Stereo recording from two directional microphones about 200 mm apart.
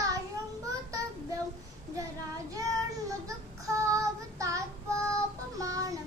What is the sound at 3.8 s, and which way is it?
Child singing, 15° right (ahead or behind).